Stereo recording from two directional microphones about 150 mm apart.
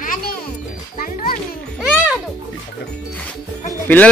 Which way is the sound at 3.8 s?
10° left (ahead or behind).